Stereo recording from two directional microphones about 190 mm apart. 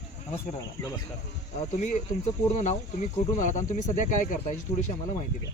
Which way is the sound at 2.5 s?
40° left (ahead or behind).